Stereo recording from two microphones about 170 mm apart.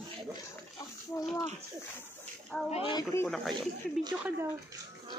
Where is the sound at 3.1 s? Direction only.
15° left (ahead or behind).